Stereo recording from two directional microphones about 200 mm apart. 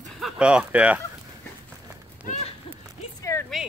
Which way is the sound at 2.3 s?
30° left (ahead or behind).